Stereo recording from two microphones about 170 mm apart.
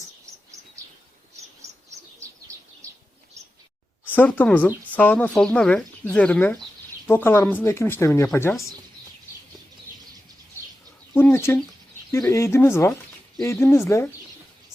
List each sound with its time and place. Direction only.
1.6 s chirp: 15° right (ahead or behind)
4.0 s speech: 10° left (ahead or behind)
11.1 s speech: 10° left (ahead or behind)